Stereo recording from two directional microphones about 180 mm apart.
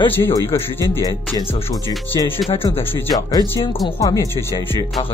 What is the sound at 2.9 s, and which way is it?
Speech, 20° left (ahead or behind).